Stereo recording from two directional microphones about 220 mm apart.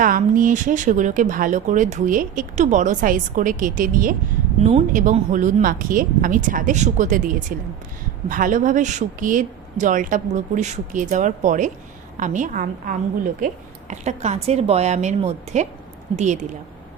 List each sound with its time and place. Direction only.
0.0 s a woman's voice: 35° right (ahead or behind)